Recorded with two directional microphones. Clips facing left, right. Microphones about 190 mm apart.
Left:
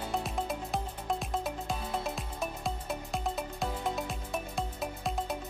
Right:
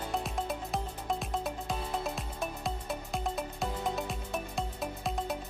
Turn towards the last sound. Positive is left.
turn(degrees=0)  # may be behind; listen again after turning